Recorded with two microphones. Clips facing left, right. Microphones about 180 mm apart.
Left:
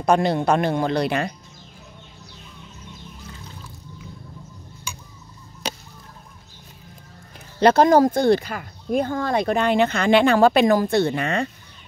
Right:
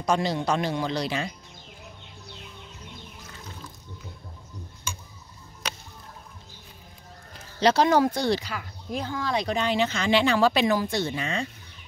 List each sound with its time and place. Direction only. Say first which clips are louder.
0.0 s speech: left 6 dB; 60° left (ahead or behind)
7.6 s speech: left 6 dB; 50° left (ahead or behind)